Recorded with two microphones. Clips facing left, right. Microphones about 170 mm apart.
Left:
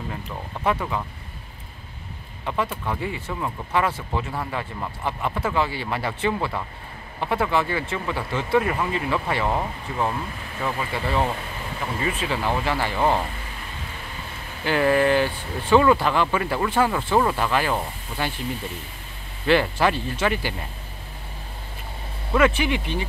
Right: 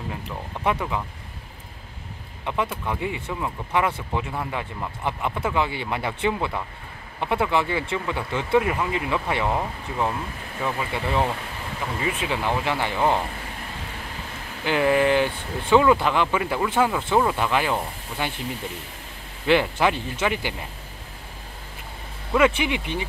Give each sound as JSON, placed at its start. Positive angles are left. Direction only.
{"t": 0.7, "sound": "speech", "side_deg": -10}
{"t": 2.4, "sound": "speech", "side_deg": -15}
{"t": 9.6, "sound": "speech", "side_deg": 0}
{"t": 10.6, "sound": "speech", "side_deg": -15}
{"t": 14.6, "sound": "speech", "side_deg": -15}
{"t": 19.4, "sound": "speech", "side_deg": -15}
{"t": 22.3, "sound": "speech", "side_deg": -15}